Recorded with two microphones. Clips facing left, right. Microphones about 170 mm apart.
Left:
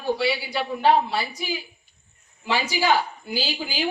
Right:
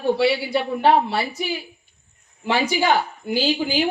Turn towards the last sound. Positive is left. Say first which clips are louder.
# right 8 dB
turn(degrees=-55)  # may be behind; listen again after turning